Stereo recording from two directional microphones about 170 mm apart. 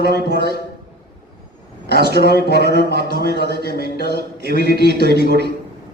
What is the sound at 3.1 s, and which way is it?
Speech, 65° left (ahead or behind).